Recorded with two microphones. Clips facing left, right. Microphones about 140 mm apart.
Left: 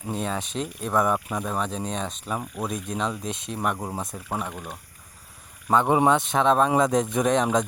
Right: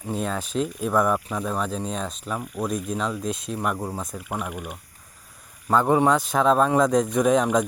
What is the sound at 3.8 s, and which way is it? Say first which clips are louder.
Speech: right 1 dB; 15° left (ahead or behind).